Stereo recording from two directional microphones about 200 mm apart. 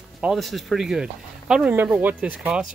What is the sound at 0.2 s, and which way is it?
Speech, centre (ahead or behind).